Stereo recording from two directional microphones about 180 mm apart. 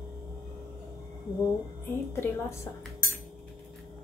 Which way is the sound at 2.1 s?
15° left (ahead or behind).